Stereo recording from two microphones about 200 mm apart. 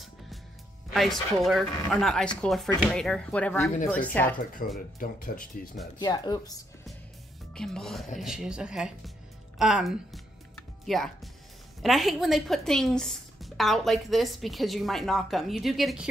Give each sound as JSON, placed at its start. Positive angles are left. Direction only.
{"t": 0.9, "sound": "speech", "side_deg": 0}
{"t": 4.7, "sound": "speech", "side_deg": 45}
{"t": 5.9, "sound": "speech", "side_deg": 20}
{"t": 7.5, "sound": "speech", "side_deg": 5}
{"t": 9.6, "sound": "music", "side_deg": 0}
{"t": 11.8, "sound": "speech", "side_deg": 0}